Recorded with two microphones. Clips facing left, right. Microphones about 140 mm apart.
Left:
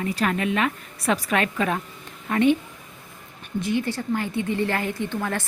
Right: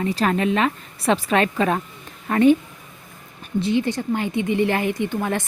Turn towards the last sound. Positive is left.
turn(degrees=-20)  # may be behind; listen again after turning